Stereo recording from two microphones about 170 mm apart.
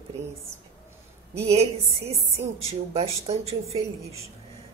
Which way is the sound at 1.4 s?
35° right (ahead or behind).